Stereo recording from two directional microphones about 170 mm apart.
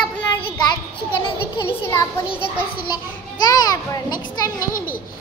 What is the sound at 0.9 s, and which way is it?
Speech, 30° left (ahead or behind).